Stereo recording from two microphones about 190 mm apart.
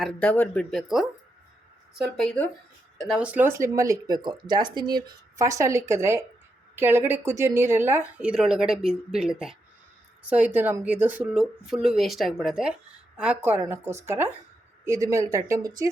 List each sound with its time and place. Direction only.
0.0 s speech: 5° left (ahead or behind); by 15.7 s 15° right (ahead or behind)